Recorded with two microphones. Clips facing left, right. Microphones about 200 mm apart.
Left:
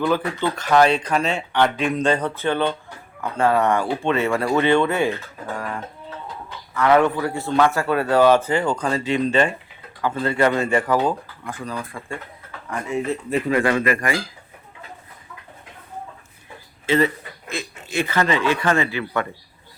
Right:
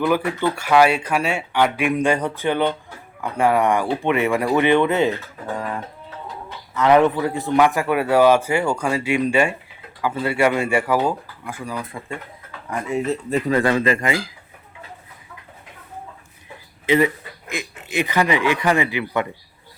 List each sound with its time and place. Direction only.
0.0 s a man's voice: 10° right (ahead or behind)
6.7 s a man's voice: 20° right (ahead or behind)
13.6 s speech: 30° right (ahead or behind)
16.8 s a man's voice: 15° right (ahead or behind)